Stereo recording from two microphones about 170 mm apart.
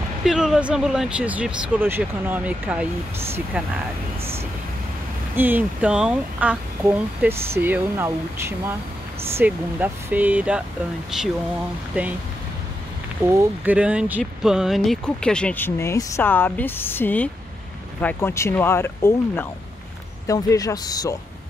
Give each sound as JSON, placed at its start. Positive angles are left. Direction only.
{"t": 0.2, "sound": "speech", "side_deg": 0}
{"t": 5.3, "sound": "speech", "side_deg": -10}
{"t": 11.9, "sound": "speech", "side_deg": -10}
{"t": 13.3, "sound": "speech", "side_deg": -10}